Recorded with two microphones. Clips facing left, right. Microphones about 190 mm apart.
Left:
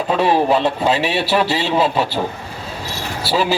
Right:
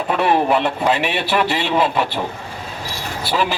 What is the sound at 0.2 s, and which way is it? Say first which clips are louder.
A man's voice: left 1 dB; 30° left (ahead or behind).